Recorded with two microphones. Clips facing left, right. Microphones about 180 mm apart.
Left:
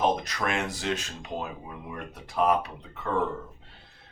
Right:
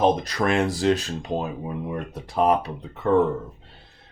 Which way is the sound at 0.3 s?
35° right (ahead or behind).